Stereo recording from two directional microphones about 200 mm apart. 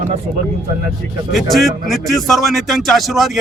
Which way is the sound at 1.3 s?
Centre (ahead or behind).